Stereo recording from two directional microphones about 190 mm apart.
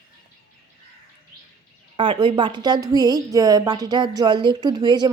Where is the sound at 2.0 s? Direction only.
25° right (ahead or behind).